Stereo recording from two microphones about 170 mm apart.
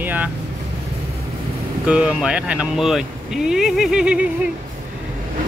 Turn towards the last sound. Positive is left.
turn(degrees=-5)  # may be behind; listen again after turning